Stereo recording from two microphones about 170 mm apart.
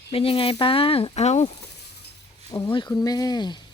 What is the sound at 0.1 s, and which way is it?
Speech, 35° left (ahead or behind).